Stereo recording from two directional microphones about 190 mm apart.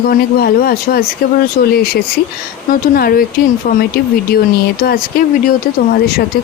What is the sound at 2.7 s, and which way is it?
Speech, 50° left (ahead or behind).